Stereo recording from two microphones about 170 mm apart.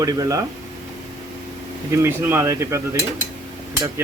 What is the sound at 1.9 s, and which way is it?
Cutlery, 15° right (ahead or behind).